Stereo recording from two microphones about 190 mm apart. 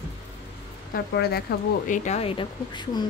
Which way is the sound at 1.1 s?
55° left (ahead or behind).